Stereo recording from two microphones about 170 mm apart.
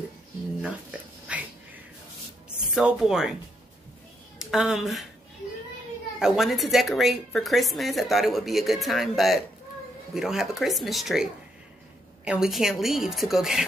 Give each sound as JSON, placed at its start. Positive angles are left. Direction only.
{"t": 1.3, "sound": "a sound", "side_deg": -5}
{"t": 2.7, "sound": "a woman's voice", "side_deg": -5}
{"t": 4.4, "sound": "speech", "side_deg": -5}
{"t": 6.1, "sound": "a woman's voice", "side_deg": 0}
{"t": 12.3, "sound": "a woman's voice", "side_deg": -5}